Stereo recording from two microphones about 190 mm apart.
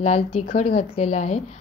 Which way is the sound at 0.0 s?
35° left (ahead or behind).